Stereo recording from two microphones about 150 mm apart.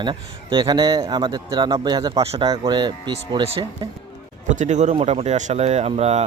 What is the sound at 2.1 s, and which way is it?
Speech, 40° right (ahead or behind).